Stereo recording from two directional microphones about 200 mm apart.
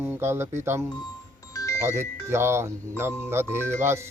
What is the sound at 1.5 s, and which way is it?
Music, 15° left (ahead or behind).